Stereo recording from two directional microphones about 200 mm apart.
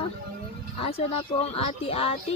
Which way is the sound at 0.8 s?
30° left (ahead or behind).